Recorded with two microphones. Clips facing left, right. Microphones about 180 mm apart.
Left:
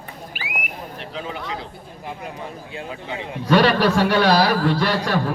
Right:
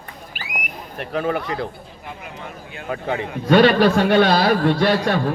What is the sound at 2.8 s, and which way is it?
A man's voice, 60° right (ahead or behind).